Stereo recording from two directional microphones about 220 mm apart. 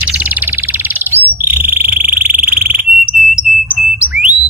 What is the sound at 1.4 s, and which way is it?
Frog, 10° right (ahead or behind).